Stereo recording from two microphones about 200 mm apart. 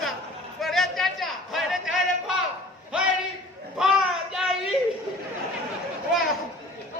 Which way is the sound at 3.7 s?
Centre (ahead or behind).